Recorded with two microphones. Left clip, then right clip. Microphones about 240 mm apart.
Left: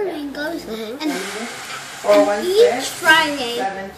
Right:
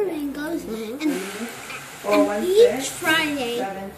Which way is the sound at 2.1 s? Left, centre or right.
Centre.